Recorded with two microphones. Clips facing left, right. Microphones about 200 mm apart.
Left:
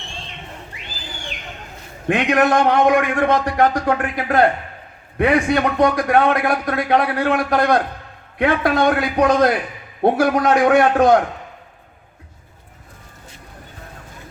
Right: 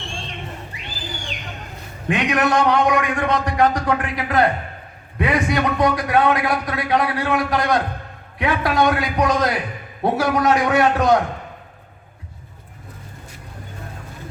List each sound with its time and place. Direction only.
2.0 s a man's voice: 50° left (ahead or behind)